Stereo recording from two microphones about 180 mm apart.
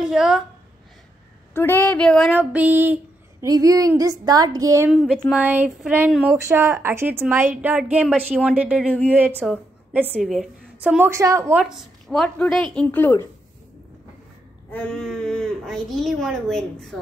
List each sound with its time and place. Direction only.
0.0 s a woman's voice: centre (ahead or behind)
1.5 s speech: 10° left (ahead or behind)
2.3 s a sound: 10° right (ahead or behind)
4.9 s speech: centre (ahead or behind); by 11.5 s 15° right (ahead or behind)
11.5 s speech: centre (ahead or behind)
14.7 s speech: 5° left (ahead or behind)